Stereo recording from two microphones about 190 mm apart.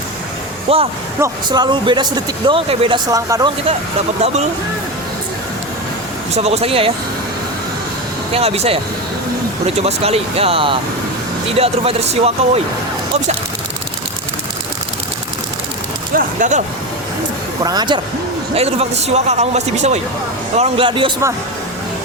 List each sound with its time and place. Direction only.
0.7 s speech: 30° right (ahead or behind)
6.3 s speech: 35° right (ahead or behind)
8.3 s speech: 30° right (ahead or behind)
16.1 s a sound: 40° right (ahead or behind)
17.6 s speech: 20° right (ahead or behind)
18.5 s speech: 35° right (ahead or behind)